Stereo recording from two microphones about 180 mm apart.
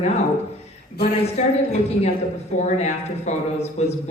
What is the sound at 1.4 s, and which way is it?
Speech, 40° left (ahead or behind).